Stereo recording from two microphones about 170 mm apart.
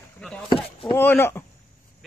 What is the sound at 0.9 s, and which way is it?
Speech, 15° left (ahead or behind).